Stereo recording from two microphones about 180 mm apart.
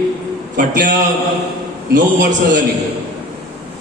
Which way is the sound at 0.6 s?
50° right (ahead or behind).